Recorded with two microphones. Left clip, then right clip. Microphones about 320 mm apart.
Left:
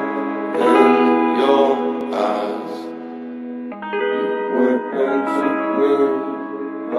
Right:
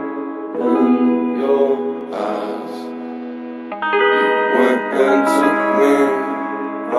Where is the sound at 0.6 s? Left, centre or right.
Left.